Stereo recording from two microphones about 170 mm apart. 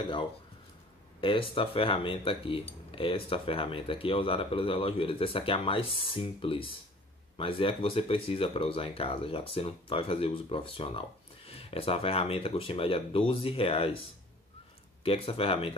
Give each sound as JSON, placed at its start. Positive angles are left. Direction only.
{"t": 1.2, "sound": "speech", "side_deg": 30}
{"t": 15.0, "sound": "speech", "side_deg": 35}